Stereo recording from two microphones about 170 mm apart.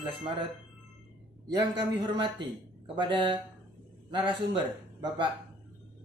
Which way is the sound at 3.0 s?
30° right (ahead or behind).